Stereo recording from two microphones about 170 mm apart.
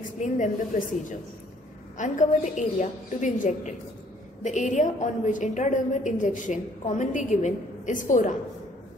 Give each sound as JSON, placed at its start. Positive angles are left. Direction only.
{"t": 0.2, "sound": "a woman's voice", "side_deg": 45}
{"t": 2.0, "sound": "a woman's voice", "side_deg": 45}